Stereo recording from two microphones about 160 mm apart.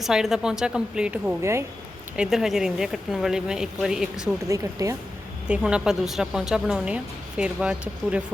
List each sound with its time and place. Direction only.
0.0 s a woman's voice: centre (ahead or behind)
2.1 s a woman's voice: 5° right (ahead or behind)
4.4 s speech: 20° right (ahead or behind)
5.5 s a woman's voice: 5° right (ahead or behind)